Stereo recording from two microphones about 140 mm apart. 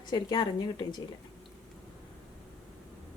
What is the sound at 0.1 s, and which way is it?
Speech, 30° left (ahead or behind).